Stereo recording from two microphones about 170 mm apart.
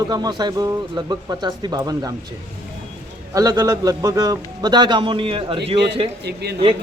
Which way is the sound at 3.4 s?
20° right (ahead or behind).